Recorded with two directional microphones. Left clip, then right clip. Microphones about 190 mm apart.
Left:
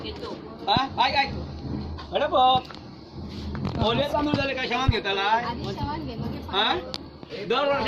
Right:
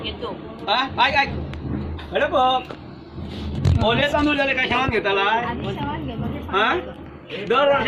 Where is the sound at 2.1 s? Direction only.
10° right (ahead or behind).